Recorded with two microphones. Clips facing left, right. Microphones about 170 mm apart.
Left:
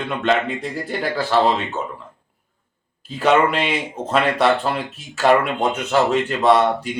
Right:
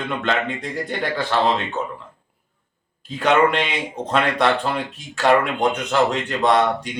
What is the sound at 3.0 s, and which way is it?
Speech, 5° left (ahead or behind).